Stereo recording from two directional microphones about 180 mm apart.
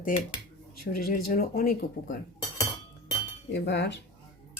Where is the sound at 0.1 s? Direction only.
45° left (ahead or behind).